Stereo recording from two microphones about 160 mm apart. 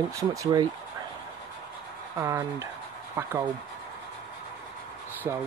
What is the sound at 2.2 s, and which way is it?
Speech, 20° right (ahead or behind).